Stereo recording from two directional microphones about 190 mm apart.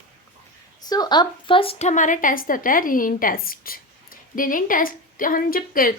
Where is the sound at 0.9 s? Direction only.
20° left (ahead or behind).